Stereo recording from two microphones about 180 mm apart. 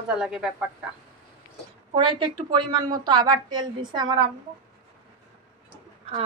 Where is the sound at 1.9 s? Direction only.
25° right (ahead or behind).